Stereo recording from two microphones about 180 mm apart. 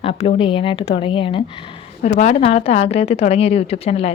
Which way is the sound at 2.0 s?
40° left (ahead or behind).